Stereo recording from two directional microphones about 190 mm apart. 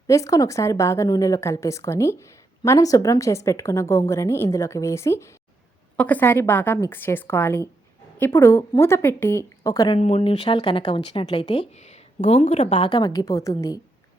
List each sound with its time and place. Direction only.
0.1 s a woman's voice: 15° left (ahead or behind)
10.0 s speech: 35° left (ahead or behind)